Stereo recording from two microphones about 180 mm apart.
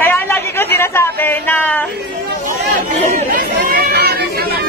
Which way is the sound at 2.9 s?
40° right (ahead or behind).